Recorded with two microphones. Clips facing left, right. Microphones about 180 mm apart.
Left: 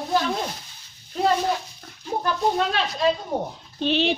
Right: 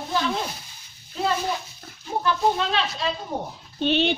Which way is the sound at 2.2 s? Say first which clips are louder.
Even; 45° left (ahead or behind).